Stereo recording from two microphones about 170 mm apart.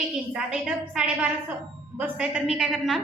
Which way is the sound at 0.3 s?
5° right (ahead or behind).